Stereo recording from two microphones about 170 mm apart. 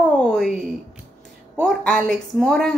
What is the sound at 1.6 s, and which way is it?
A woman's voice, 5° left (ahead or behind).